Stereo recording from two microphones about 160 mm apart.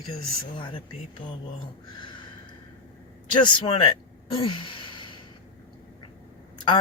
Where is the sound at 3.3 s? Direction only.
30° left (ahead or behind).